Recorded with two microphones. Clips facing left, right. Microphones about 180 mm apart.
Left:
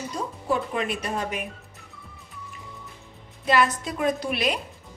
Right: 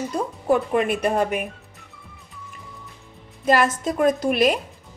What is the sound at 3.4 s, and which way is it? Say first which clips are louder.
A woman's voice: right 3 dB; 45° right (ahead or behind).